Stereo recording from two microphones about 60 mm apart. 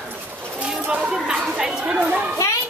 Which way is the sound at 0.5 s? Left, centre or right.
Centre.